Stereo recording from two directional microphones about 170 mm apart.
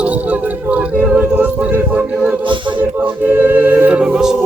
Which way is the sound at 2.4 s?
30° right (ahead or behind).